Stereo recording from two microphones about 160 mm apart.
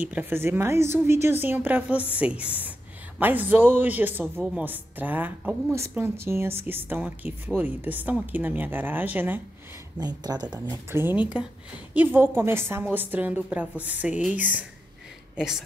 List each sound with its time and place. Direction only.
0.0 s a woman's voice: 10° right (ahead or behind)
9.9 s a woman's voice: 25° right (ahead or behind); by 15.6 s 5° right (ahead or behind)